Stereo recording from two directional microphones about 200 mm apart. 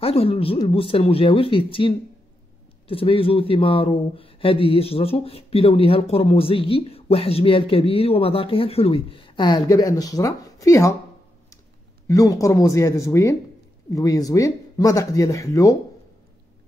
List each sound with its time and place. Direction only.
0.0 s speech: 30° left (ahead or behind)
12.1 s speech: 15° left (ahead or behind)